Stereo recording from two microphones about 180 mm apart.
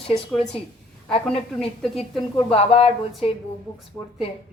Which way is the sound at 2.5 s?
30° left (ahead or behind).